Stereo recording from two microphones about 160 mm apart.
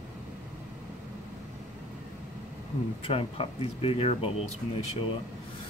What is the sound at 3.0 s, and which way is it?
Speech, 35° left (ahead or behind).